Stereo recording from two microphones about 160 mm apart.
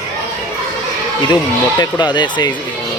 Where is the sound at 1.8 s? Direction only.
25° left (ahead or behind).